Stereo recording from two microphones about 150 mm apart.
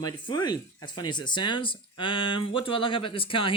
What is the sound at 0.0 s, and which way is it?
Speech, 30° left (ahead or behind).